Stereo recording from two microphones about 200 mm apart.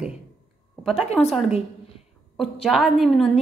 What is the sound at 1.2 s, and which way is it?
Speech, 5° left (ahead or behind).